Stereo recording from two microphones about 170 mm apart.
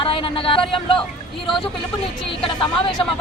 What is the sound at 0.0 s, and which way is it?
Speech, 30° left (ahead or behind).